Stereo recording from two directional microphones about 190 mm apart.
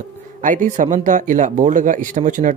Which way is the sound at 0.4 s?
45° right (ahead or behind).